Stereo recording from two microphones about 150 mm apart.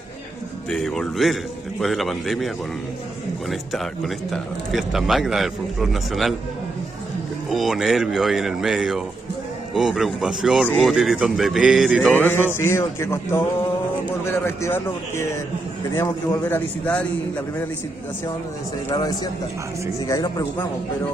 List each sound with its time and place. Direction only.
0.7 s speech: centre (ahead or behind)
7.4 s speech: centre (ahead or behind)
12.1 s music: 10° left (ahead or behind)
18.9 s a man's voice: 25° left (ahead or behind)